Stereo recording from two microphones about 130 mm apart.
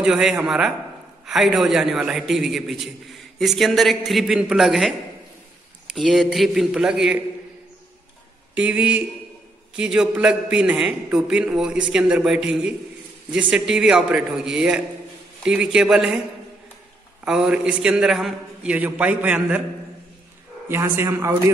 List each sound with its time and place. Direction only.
0.0 s a man's voice: 5° right (ahead or behind)
5.9 s a man's voice: centre (ahead or behind)
8.5 s a man's voice: 10° right (ahead or behind)
17.2 s a man's voice: 5° right (ahead or behind)
20.6 s a man's voice: 15° right (ahead or behind)